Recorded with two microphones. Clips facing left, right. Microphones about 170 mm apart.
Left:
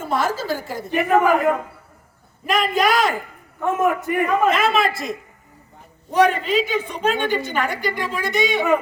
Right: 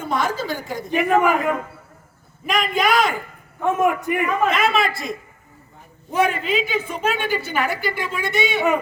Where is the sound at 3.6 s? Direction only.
15° right (ahead or behind).